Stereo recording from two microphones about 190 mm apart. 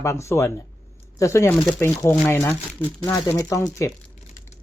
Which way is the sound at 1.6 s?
Centre (ahead or behind).